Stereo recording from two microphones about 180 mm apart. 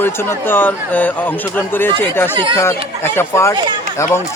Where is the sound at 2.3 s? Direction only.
25° right (ahead or behind).